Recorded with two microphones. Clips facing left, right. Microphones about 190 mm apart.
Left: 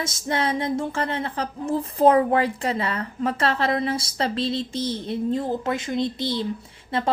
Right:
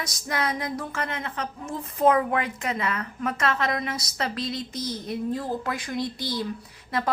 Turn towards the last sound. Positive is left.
turn(degrees=25)  # may be behind; listen again after turning